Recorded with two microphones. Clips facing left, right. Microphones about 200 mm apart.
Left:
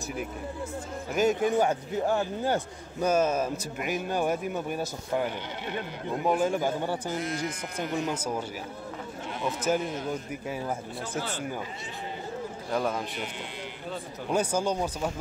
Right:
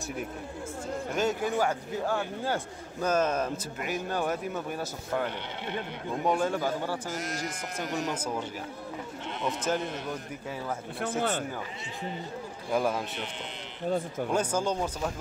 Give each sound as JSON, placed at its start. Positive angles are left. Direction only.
{"t": 1.1, "sound": "a man's voice", "side_deg": 15}
{"t": 6.2, "sound": "speech", "side_deg": 5}
{"t": 6.5, "sound": "a man's voice", "side_deg": 20}
{"t": 7.1, "sound": "speech", "side_deg": -45}
{"t": 9.4, "sound": "speech", "side_deg": 5}
{"t": 11.0, "sound": "speech", "side_deg": -55}
{"t": 12.7, "sound": "speech", "side_deg": -5}
{"t": 14.3, "sound": "a man's voice", "side_deg": 10}